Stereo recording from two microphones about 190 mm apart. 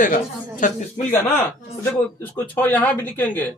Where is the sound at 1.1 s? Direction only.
10° left (ahead or behind).